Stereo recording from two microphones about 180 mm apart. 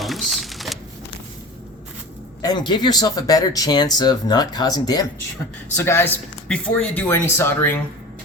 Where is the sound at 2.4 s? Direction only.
25° left (ahead or behind).